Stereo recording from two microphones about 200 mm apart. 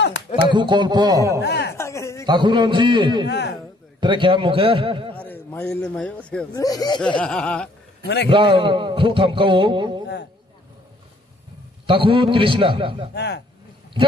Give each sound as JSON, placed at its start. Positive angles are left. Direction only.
{"t": 0.5, "sound": "a man's voice", "side_deg": -20}
{"t": 1.4, "sound": "a sound", "side_deg": 55}
{"t": 1.8, "sound": "a sound", "side_deg": 15}
{"t": 2.2, "sound": "a man's voice", "side_deg": -25}
{"t": 3.3, "sound": "a man's voice", "side_deg": 60}
{"t": 4.0, "sound": "a man's voice", "side_deg": -25}
{"t": 5.1, "sound": "a man's voice", "side_deg": 10}
{"t": 6.5, "sound": "speech", "side_deg": 20}
{"t": 7.2, "sound": "chuckle", "side_deg": 5}
{"t": 8.3, "sound": "a man's voice", "side_deg": -25}
{"t": 11.8, "sound": "a man's voice", "side_deg": -25}
{"t": 13.1, "sound": "a man's voice", "side_deg": 60}